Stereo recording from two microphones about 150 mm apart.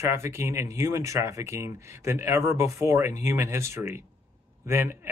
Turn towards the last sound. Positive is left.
turn(degrees=-15)  # may be behind; listen again after turning